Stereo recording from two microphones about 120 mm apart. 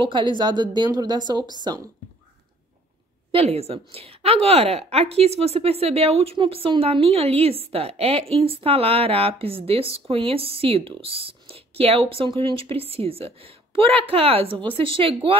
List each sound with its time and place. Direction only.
0.0 s a woman's voice: 40° right (ahead or behind)
3.3 s a woman's voice: 55° right (ahead or behind)